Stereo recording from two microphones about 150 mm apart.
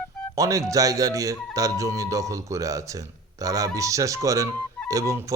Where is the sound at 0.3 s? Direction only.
20° right (ahead or behind).